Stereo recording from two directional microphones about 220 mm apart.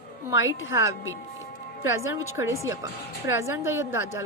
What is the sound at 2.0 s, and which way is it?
A woman's voice, 15° right (ahead or behind).